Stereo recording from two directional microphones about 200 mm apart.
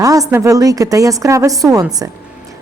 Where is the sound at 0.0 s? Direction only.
15° right (ahead or behind).